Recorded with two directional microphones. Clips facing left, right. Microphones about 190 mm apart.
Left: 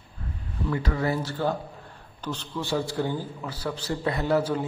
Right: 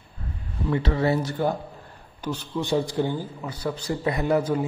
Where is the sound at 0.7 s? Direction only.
25° right (ahead or behind).